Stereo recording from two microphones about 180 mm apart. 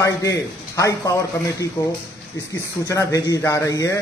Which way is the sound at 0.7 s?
15° left (ahead or behind).